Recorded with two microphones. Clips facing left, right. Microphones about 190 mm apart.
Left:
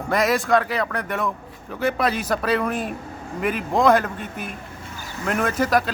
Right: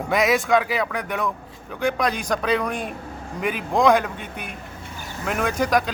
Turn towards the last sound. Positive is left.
turn(degrees=0)  # may be behind; listen again after turning